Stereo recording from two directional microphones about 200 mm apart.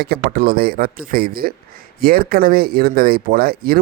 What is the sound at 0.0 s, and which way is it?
A man's voice, 50° right (ahead or behind).